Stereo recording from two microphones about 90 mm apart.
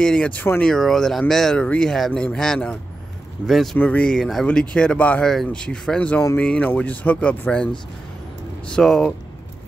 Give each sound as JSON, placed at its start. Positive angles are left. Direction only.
{"t": 0.0, "sound": "speech", "side_deg": 10}
{"t": 0.7, "sound": "speech", "side_deg": 5}
{"t": 3.7, "sound": "speech", "side_deg": 20}
{"t": 4.1, "sound": "speech", "side_deg": 5}
{"t": 5.2, "sound": "speech", "side_deg": 5}